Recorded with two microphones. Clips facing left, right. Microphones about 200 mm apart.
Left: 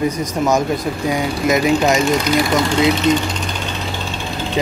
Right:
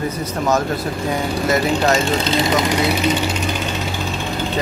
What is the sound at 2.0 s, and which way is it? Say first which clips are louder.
Speech: left 3 dB; 25° right (ahead or behind).